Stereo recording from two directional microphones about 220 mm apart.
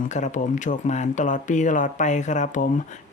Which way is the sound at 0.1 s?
35° left (ahead or behind).